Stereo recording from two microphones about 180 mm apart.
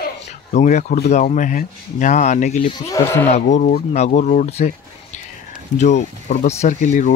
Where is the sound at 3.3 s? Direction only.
40° left (ahead or behind).